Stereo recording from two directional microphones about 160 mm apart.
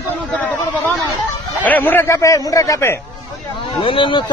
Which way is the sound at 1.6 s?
10° left (ahead or behind).